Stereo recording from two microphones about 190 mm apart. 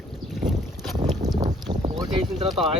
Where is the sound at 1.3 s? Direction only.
20° right (ahead or behind).